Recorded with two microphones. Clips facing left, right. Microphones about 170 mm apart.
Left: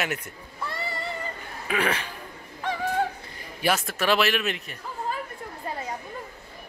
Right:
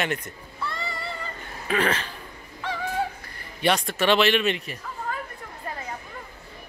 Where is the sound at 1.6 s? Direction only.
10° left (ahead or behind).